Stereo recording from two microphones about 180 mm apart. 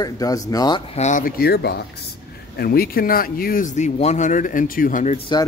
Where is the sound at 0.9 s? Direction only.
40° left (ahead or behind).